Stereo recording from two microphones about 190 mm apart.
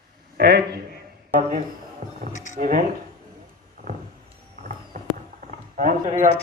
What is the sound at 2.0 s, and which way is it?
Music, 40° right (ahead or behind).